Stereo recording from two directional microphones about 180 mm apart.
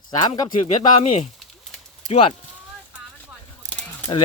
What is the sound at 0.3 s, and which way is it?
Speech, 30° left (ahead or behind).